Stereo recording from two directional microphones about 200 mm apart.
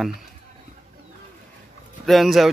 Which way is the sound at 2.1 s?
Centre (ahead or behind).